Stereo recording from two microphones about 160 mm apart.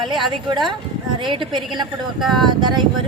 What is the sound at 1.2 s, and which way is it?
Speech, 30° right (ahead or behind).